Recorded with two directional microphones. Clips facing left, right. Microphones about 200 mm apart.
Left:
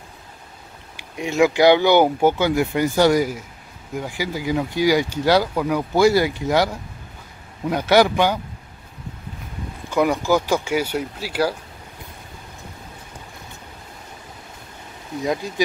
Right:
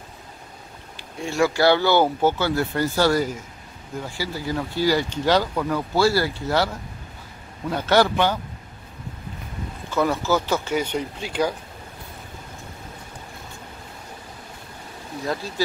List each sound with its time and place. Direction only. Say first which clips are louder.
0.9 s speech: left 4 dB; 15° left (ahead or behind)
9.8 s speech: left 3 dB; 15° left (ahead or behind)
15.2 s speech: left 4 dB; 15° left (ahead or behind)